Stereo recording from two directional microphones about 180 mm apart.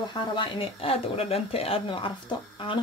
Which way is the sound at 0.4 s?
30° left (ahead or behind).